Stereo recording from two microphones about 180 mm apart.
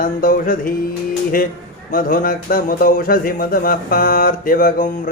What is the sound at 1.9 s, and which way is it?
Mantra, 50° left (ahead or behind).